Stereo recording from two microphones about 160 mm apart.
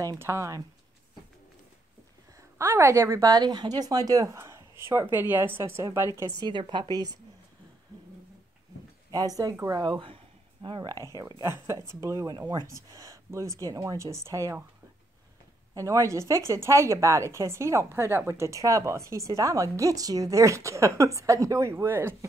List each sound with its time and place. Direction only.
0.0 s a woman's voice: 20° right (ahead or behind)
2.6 s speech: 15° right (ahead or behind)
6.4 s a woman's voice: 30° right (ahead or behind)
9.1 s a woman's voice: 20° right (ahead or behind)
15.7 s a woman's voice: 20° right (ahead or behind)